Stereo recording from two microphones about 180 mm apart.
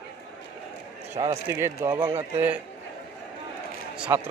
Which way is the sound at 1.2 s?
15° right (ahead or behind).